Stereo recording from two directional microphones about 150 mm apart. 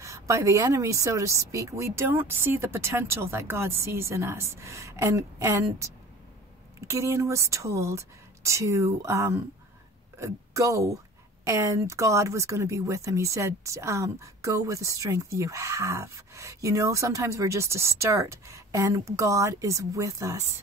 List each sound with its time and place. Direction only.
0.0 s speech: 20° right (ahead or behind)
6.9 s speech: 20° right (ahead or behind)